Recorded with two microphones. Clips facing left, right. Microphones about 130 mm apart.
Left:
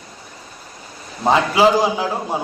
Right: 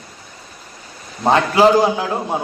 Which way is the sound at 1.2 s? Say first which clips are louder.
Right 2 dB; centre (ahead or behind).